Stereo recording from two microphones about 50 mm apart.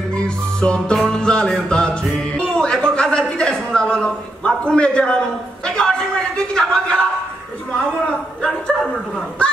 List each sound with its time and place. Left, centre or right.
0.1 s music: centre
2.9 s a man's voice: centre